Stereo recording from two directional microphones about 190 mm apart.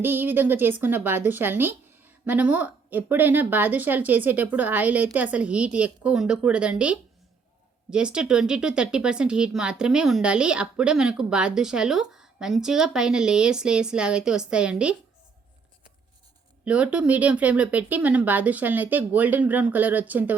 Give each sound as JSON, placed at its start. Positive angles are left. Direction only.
{"t": 0.0, "sound": "a woman's voice", "side_deg": -10}
{"t": 16.6, "sound": "a woman's voice", "side_deg": -5}